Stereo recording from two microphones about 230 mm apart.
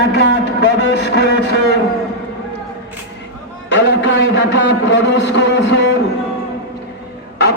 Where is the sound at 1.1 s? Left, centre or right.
Left.